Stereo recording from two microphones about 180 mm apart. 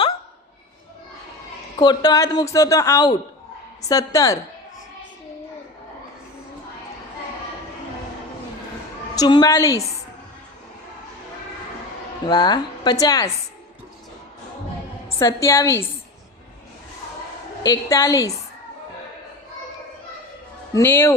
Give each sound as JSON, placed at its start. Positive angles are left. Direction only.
{"t": 1.8, "sound": "speech", "side_deg": 25}
{"t": 9.1, "sound": "speech", "side_deg": 20}
{"t": 12.2, "sound": "speech", "side_deg": 25}
{"t": 15.2, "sound": "a woman's voice", "side_deg": 15}
{"t": 17.6, "sound": "speech", "side_deg": 20}
{"t": 20.7, "sound": "a woman's voice", "side_deg": 15}